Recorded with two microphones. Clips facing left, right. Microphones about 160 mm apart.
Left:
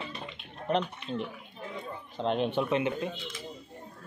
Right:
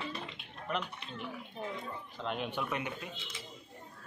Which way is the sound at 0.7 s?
30° left (ahead or behind).